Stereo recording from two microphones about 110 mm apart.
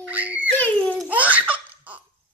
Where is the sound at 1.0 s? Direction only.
15° right (ahead or behind).